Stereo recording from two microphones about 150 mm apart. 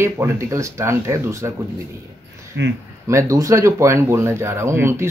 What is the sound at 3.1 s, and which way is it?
Speech, 20° right (ahead or behind).